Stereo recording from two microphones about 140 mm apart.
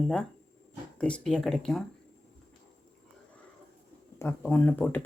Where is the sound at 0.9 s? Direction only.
10° left (ahead or behind).